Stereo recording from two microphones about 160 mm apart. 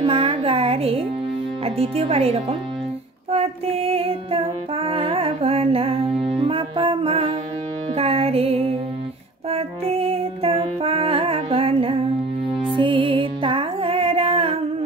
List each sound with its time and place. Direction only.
0.0 s music: 35° right (ahead or behind)
1.8 s speech: 40° right (ahead or behind)
3.3 s music: 40° right (ahead or behind)